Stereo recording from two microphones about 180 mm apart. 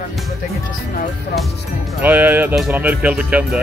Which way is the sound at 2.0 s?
10° right (ahead or behind).